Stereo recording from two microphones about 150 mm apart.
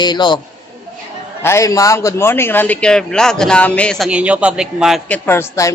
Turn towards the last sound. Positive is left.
turn(degrees=20)  # may be behind; listen again after turning